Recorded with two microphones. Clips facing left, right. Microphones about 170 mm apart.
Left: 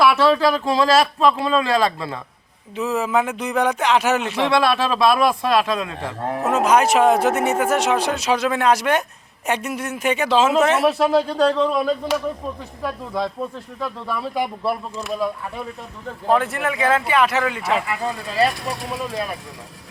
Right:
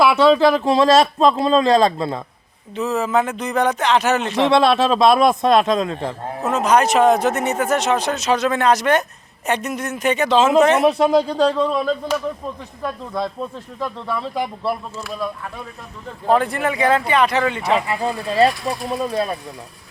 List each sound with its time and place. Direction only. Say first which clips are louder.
0.0 s speech: right 3 dB; 20° right (ahead or behind)
2.7 s speech: right 1 dB; 10° left (ahead or behind)
4.4 s speech: right 6 dB; 20° right (ahead or behind)
6.4 s a man's voice: even; 10° left (ahead or behind)
13.7 s a man's voice: right 2 dB; 5° left (ahead or behind)
16.3 s a man's voice: right 2 dB; centre (ahead or behind)
17.7 s speech: right 3 dB; 30° right (ahead or behind)